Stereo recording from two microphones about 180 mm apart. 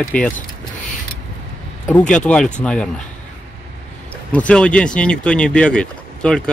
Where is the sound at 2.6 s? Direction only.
5° left (ahead or behind).